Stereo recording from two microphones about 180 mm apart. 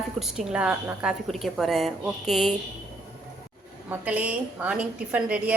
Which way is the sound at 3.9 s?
10° right (ahead or behind).